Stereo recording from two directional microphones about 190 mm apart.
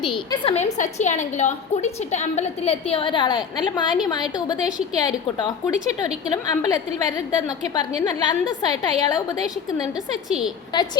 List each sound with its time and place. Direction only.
0.0 s a woman's voice: 25° left (ahead or behind)
10.2 s a woman's voice: 5° right (ahead or behind)
10.7 s a woman's voice: 20° left (ahead or behind)